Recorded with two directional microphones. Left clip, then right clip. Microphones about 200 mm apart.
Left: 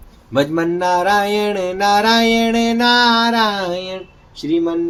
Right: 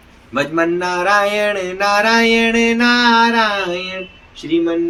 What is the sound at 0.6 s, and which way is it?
Speech, 60° left (ahead or behind).